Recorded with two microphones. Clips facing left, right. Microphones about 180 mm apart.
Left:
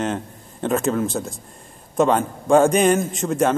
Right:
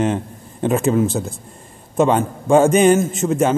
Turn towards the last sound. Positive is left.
turn(degrees=-5)  # may be behind; listen again after turning